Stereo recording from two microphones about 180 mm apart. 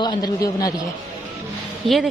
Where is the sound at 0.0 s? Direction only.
20° left (ahead or behind).